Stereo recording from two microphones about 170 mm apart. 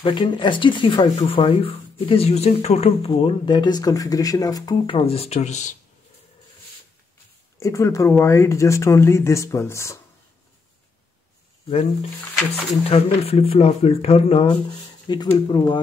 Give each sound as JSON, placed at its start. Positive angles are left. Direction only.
{"t": 0.0, "sound": "speech", "side_deg": 30}
{"t": 7.5, "sound": "speech", "side_deg": 20}
{"t": 12.8, "sound": "speech", "side_deg": 35}